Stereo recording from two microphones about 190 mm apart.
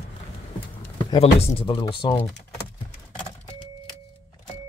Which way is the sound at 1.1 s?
30° left (ahead or behind).